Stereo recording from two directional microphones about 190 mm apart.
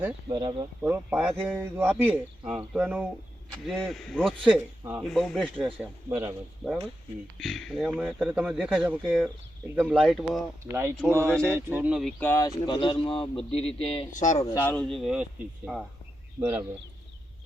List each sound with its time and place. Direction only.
0.3 s speech: 25° right (ahead or behind)
0.8 s a man's voice: 10° right (ahead or behind)
4.8 s a man's voice: 10° right (ahead or behind)
5.1 s speech: centre (ahead or behind)
5.8 s a man's voice: 10° right (ahead or behind)
7.3 s a man's voice: centre (ahead or behind)
10.7 s a man's voice: 15° right (ahead or behind)
12.2 s a man's voice: 15° left (ahead or behind); by 14.5 s 40° left (ahead or behind)
14.5 s a man's voice: 10° left (ahead or behind); by 16.6 s 10° right (ahead or behind)